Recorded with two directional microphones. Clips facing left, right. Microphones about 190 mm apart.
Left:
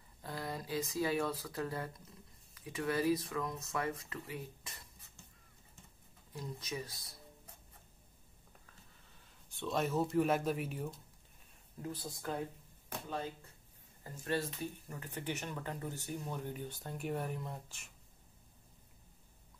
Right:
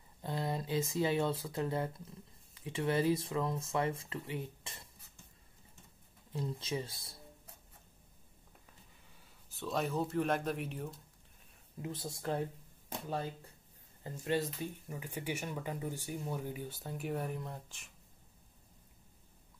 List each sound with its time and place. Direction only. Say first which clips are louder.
0.2 s speech: right 5 dB; 25° right (ahead or behind)
6.3 s speech: right 5 dB; 25° right (ahead or behind)
9.5 s speech: left 1 dB; centre (ahead or behind)
11.8 s speech: right 2 dB; 25° right (ahead or behind)
14.0 s speech: right 3 dB; 20° right (ahead or behind); by 17.9 s centre (ahead or behind)